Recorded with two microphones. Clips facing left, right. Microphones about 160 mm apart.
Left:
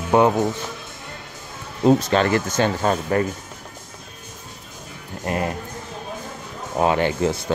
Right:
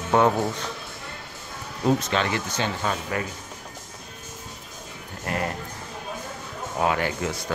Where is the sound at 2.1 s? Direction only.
45° left (ahead or behind).